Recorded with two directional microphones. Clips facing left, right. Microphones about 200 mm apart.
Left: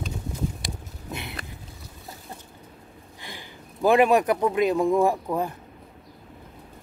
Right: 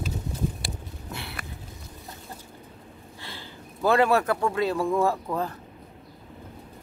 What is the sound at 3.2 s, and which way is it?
A man's voice, 15° left (ahead or behind).